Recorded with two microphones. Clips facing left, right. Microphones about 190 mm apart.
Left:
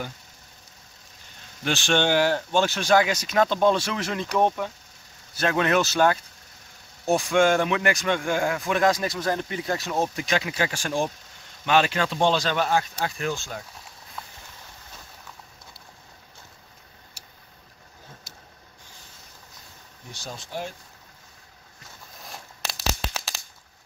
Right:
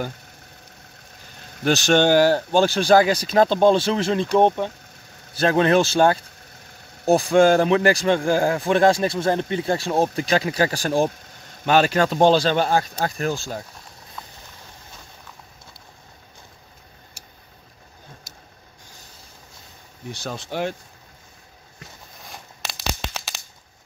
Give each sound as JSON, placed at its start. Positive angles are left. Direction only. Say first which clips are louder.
{"t": 1.6, "sound": "speech", "louder": "right 6 dB", "side_deg": -40}
{"t": 20.1, "sound": "speech", "louder": "right 7 dB", "side_deg": -65}
{"t": 22.2, "sound": "a sound", "louder": "even", "side_deg": 0}